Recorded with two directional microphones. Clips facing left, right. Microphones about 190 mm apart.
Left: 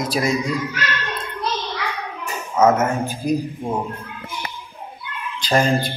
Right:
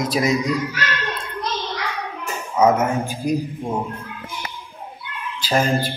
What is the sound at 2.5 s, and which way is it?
Speech, 15° right (ahead or behind).